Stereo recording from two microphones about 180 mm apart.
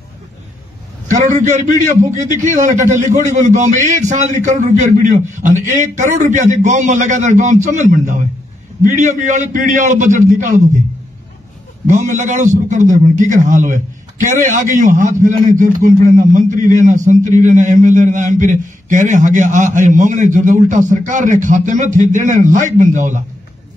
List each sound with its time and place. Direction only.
1.0 s a man's voice: 40° right (ahead or behind)
11.9 s a man's voice: 45° right (ahead or behind)